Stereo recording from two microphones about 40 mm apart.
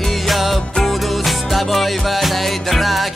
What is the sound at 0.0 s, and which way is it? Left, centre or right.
Music, centre.